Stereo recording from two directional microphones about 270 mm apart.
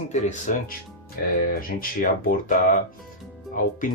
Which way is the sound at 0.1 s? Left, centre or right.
Left.